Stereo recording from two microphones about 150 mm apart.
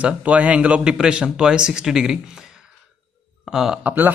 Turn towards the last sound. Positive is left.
turn(degrees=-10)  # may be behind; listen again after turning